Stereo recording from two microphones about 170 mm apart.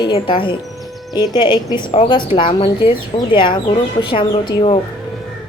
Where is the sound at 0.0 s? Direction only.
30° left (ahead or behind).